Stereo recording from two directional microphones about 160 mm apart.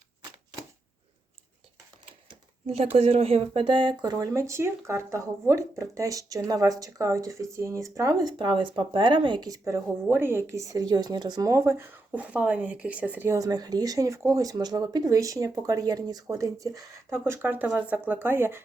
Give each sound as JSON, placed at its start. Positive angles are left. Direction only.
{"t": 2.6, "sound": "speech", "side_deg": -40}